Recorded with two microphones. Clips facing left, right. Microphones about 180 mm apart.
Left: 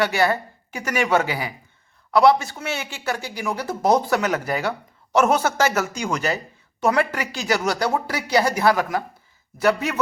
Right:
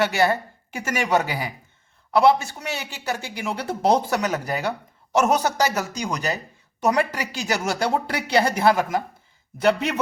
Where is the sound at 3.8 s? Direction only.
30° right (ahead or behind).